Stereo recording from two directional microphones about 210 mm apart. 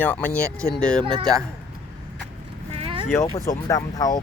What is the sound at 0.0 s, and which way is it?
Speech, 5° left (ahead or behind).